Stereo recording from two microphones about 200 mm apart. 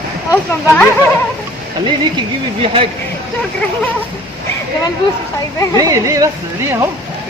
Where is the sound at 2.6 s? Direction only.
25° right (ahead or behind).